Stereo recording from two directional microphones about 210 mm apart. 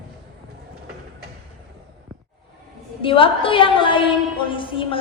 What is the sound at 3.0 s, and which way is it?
A man's voice, 25° left (ahead or behind).